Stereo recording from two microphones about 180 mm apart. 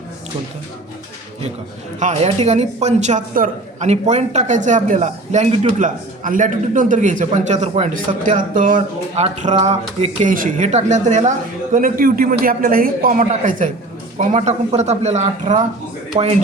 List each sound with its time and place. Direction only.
2.0 s a man's voice: 40° right (ahead or behind)